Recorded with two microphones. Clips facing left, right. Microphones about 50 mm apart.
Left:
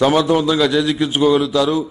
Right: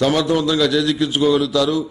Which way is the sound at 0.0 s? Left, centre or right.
Centre.